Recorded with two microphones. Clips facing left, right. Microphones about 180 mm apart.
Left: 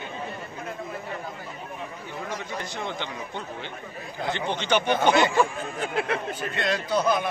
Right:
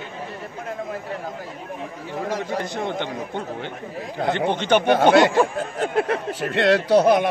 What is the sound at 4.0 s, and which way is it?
Speech, 80° right.